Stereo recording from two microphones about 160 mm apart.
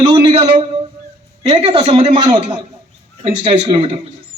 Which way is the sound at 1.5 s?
35° right (ahead or behind).